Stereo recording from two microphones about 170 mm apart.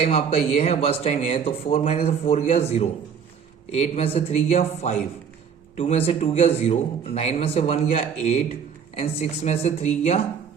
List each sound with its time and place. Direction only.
0.0 s a man's voice: 35° left (ahead or behind)